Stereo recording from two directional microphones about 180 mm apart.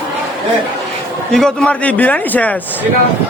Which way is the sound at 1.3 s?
5° left (ahead or behind).